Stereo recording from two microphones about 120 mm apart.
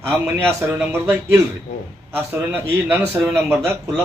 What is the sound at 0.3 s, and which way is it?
A man's voice, 20° right (ahead or behind).